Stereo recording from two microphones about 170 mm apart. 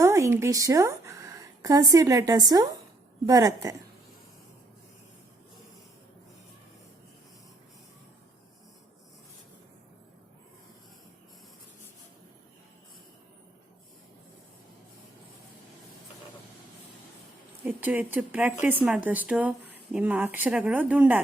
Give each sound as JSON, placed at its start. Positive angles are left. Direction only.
{"t": 0.0, "sound": "a woman's voice", "side_deg": -15}
{"t": 17.7, "sound": "speech", "side_deg": -10}